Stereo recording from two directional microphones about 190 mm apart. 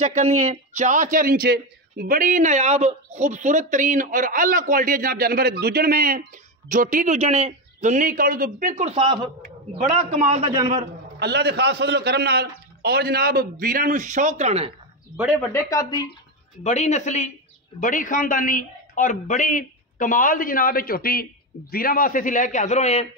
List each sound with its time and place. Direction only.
0.0 s a man's voice: 35° right (ahead or behind)
11.1 s a man's voice: 60° right (ahead or behind); by 14.7 s 35° right (ahead or behind)
15.1 s speech: centre (ahead or behind)
15.5 s speech: 20° left (ahead or behind)
16.6 s a man's voice: 35° left (ahead or behind)